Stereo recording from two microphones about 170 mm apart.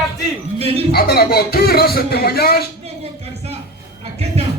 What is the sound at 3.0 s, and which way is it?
Music, 35° right (ahead or behind).